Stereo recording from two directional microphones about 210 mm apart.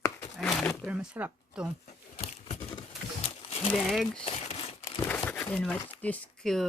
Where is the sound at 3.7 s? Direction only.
Centre (ahead or behind).